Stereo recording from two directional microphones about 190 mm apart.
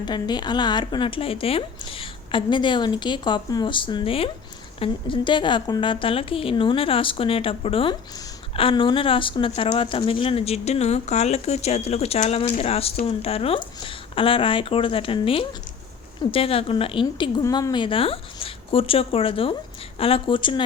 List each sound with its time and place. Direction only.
0.0 s speech: 20° left (ahead or behind)